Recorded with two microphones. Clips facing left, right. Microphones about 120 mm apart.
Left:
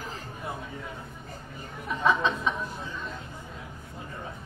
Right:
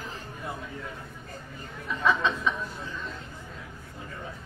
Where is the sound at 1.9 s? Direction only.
20° left (ahead or behind).